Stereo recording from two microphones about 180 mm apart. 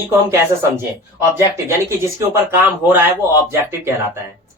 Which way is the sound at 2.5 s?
10° right (ahead or behind).